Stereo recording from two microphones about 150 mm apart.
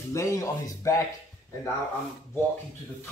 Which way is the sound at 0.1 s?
20° left (ahead or behind).